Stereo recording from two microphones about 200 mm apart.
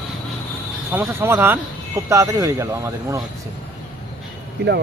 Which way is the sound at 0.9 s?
10° right (ahead or behind).